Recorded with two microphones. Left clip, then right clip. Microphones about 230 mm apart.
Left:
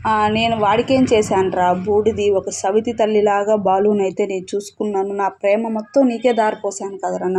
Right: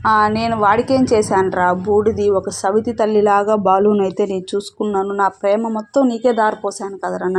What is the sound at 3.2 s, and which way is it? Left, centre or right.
Speech, centre.